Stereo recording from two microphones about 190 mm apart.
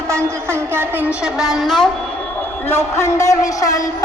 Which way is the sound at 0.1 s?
15° right (ahead or behind).